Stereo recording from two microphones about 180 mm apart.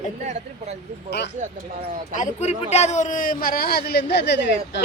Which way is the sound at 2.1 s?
40° left (ahead or behind).